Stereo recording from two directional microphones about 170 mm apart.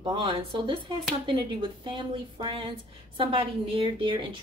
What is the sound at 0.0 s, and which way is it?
A woman's voice, 30° right (ahead or behind).